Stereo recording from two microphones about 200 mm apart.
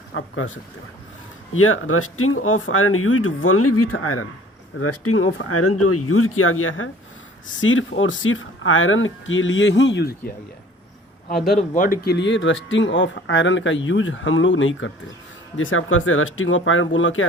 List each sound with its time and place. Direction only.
0.1 s speech: 75° left (ahead or behind)
1.5 s speech: 90° left; by 10.3 s 50° left (ahead or behind)
11.7 s speech: 45° left (ahead or behind); by 14.9 s 75° left (ahead or behind)
15.5 s speech: 85° left